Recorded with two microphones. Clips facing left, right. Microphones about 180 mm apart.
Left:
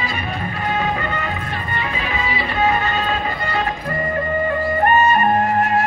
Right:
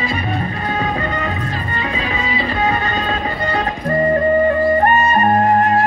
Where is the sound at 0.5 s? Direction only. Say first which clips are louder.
Right 1 dB; 35° right (ahead or behind).